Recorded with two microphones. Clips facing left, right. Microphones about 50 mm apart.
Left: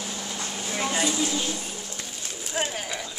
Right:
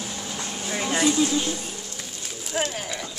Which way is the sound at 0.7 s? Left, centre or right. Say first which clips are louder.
Right 4 dB; centre.